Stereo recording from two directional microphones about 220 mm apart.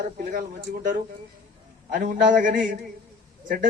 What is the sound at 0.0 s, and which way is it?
Speech, 40° right (ahead or behind).